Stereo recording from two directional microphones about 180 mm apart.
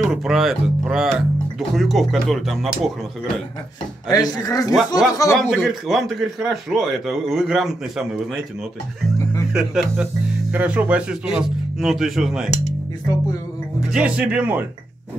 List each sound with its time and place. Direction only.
0.0 s a man's voice: centre (ahead or behind)
4.1 s speech: 20° left (ahead or behind)
4.7 s a man's voice: centre (ahead or behind)
5.1 s a man's voice: 15° left (ahead or behind)
5.6 s a man's voice: centre (ahead or behind)
9.5 s a man's voice: 5° right (ahead or behind)
13.7 s speech: 5° right (ahead or behind)